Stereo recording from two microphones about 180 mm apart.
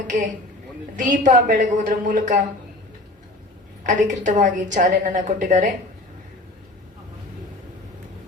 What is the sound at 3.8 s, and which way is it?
A woman's voice, 45° right (ahead or behind).